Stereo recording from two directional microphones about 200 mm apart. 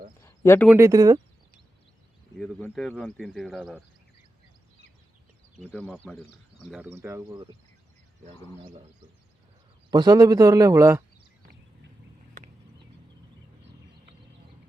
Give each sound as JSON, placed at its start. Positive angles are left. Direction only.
{"t": 0.2, "sound": "a sound", "side_deg": 15}
{"t": 0.7, "sound": "a man's voice", "side_deg": -15}
{"t": 2.4, "sound": "speech", "side_deg": 5}
{"t": 6.0, "sound": "speech", "side_deg": 10}
{"t": 6.6, "sound": "a man's voice", "side_deg": -5}
{"t": 9.9, "sound": "a man's voice", "side_deg": -20}